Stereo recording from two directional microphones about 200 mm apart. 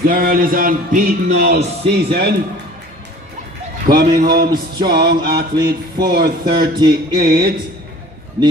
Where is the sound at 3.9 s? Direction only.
50° right (ahead or behind).